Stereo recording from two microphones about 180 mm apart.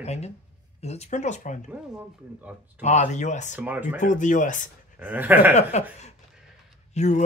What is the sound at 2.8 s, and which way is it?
Speech, 40° left (ahead or behind).